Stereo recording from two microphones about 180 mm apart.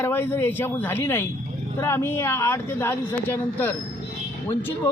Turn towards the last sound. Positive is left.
turn(degrees=10)  # may be behind; listen again after turning